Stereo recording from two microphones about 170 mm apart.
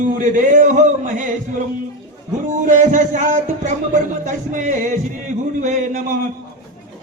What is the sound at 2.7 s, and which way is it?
Music, 50° right (ahead or behind).